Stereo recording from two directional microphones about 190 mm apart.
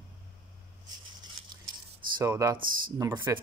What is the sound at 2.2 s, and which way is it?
Speech, 15° right (ahead or behind).